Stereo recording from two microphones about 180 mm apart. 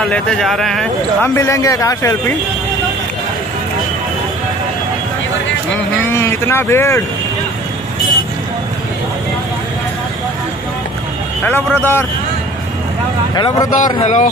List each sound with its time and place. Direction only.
0.0 s speech: 5° left (ahead or behind)
1.2 s speech: 15° left (ahead or behind)
6.1 s speech: 15° left (ahead or behind)
11.4 s speech: 10° left (ahead or behind)
13.3 s speech: 20° left (ahead or behind)
13.7 s speech: 45° left (ahead or behind)